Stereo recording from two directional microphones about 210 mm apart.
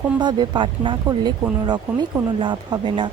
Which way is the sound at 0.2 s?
20° right (ahead or behind).